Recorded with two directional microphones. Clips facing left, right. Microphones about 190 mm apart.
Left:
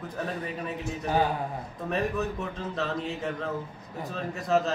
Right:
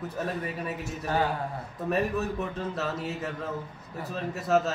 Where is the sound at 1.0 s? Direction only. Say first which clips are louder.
Left 2 dB; 15° left (ahead or behind).